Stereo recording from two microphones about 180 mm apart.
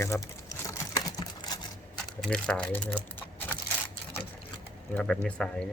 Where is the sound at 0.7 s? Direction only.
20° left (ahead or behind).